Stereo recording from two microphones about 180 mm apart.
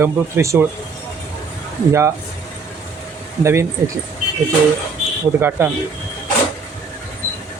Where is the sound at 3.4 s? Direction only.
15° right (ahead or behind).